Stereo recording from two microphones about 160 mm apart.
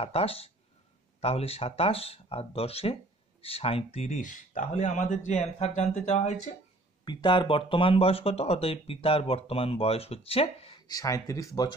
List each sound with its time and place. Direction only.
0.0 s speech: 35° left (ahead or behind)
7.1 s speech: 30° left (ahead or behind)
10.9 s speech: 20° left (ahead or behind)